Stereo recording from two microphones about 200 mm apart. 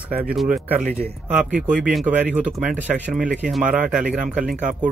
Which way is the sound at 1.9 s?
5° right (ahead or behind).